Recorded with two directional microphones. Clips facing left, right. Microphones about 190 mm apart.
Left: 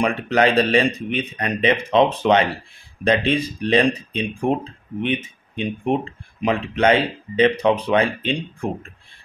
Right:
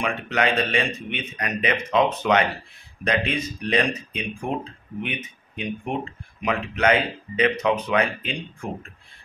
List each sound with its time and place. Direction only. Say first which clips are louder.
0.0 s speech: left 6 dB; 35° left (ahead or behind)